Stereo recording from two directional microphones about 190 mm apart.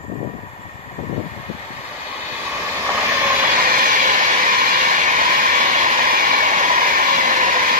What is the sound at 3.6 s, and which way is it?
Vehicle, 45° right (ahead or behind).